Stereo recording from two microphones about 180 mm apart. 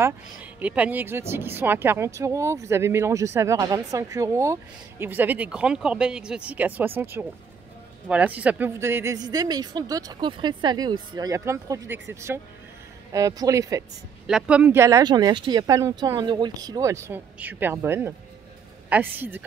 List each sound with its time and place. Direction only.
0.0 s speech: 10° right (ahead or behind)
14.2 s speech: 5° right (ahead or behind)